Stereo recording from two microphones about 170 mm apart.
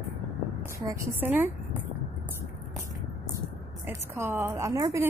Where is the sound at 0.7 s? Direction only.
15° right (ahead or behind).